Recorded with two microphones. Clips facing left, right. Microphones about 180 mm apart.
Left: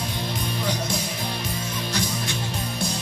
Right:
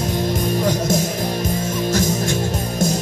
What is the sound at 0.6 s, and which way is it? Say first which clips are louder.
Music: right 7 dB; 45° right (ahead or behind).